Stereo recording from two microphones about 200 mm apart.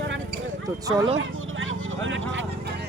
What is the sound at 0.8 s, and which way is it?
Speech, 20° right (ahead or behind).